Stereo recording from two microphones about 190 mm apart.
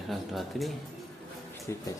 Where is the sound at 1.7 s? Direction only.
15° left (ahead or behind).